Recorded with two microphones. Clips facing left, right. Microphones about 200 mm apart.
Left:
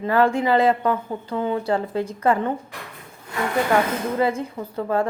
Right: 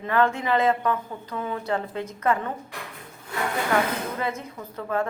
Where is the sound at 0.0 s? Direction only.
35° left (ahead or behind).